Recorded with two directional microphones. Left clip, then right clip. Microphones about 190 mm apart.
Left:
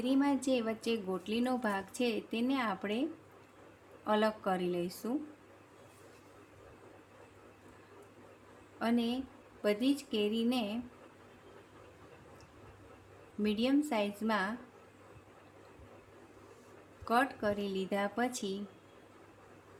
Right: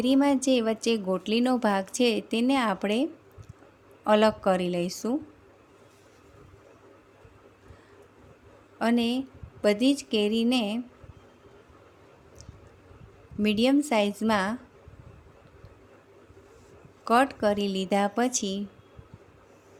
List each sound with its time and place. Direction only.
0.0 s a woman's voice: 40° right (ahead or behind)
8.8 s a woman's voice: 40° right (ahead or behind)
13.4 s a woman's voice: 40° right (ahead or behind)
17.1 s a woman's voice: 40° right (ahead or behind)